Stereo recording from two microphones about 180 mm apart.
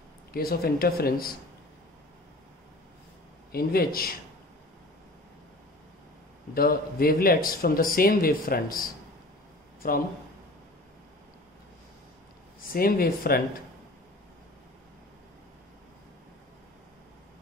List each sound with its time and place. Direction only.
0.3 s speech: 55° left (ahead or behind)
3.5 s speech: 55° left (ahead or behind)
6.5 s speech: 55° left (ahead or behind)
12.6 s speech: 55° left (ahead or behind)